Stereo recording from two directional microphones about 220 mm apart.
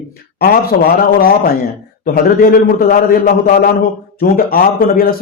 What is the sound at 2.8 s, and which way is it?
A man's voice, 45° left (ahead or behind).